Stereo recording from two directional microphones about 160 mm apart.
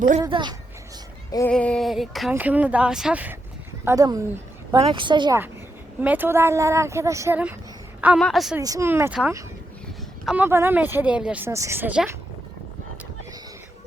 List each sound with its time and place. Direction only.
0.3 s speech: 30° right (ahead or behind)
1.5 s a sound: 5° left (ahead or behind)
2.3 s speech: 10° right (ahead or behind)
3.8 s speech: 20° right (ahead or behind)
6.0 s speech: 10° right (ahead or behind)
8.2 s a sound: centre (ahead or behind)
8.5 s speech: 20° right (ahead or behind)
10.2 s speech: 10° right (ahead or behind)